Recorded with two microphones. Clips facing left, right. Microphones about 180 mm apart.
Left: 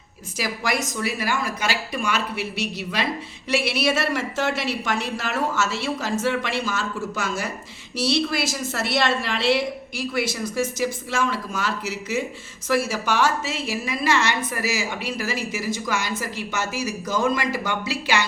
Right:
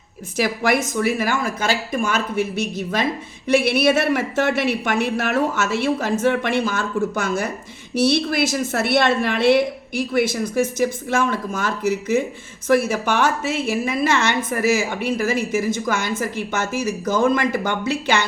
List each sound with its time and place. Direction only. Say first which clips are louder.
0.3 s a woman's voice: right 6 dB; 55° right (ahead or behind)